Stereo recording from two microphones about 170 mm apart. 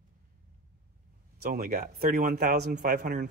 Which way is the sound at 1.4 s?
60° right (ahead or behind).